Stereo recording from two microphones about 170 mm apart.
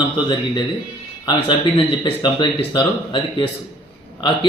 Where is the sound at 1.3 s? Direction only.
25° left (ahead or behind).